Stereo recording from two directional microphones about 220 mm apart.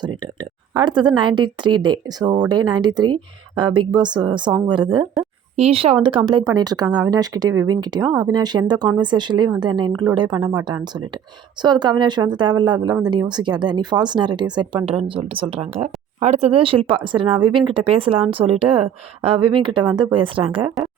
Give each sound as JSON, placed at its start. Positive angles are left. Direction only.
{"t": 0.7, "sound": "speech", "side_deg": -20}